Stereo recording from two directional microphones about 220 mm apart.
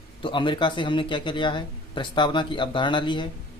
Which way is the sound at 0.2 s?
20° left (ahead or behind).